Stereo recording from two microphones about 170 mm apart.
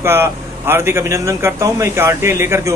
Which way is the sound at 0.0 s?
15° right (ahead or behind).